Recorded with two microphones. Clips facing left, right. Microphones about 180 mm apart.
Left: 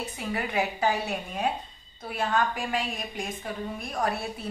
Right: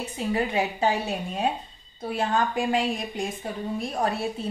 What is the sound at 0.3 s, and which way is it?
A woman's voice, 25° right (ahead or behind).